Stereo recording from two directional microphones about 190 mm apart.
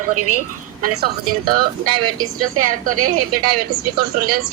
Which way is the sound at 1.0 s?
55° right (ahead or behind).